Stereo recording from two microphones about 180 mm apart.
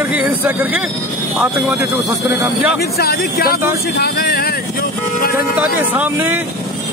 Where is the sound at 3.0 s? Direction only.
60° left (ahead or behind).